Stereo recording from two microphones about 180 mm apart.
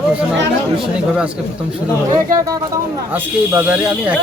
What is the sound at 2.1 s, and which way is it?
Speech, 15° right (ahead or behind).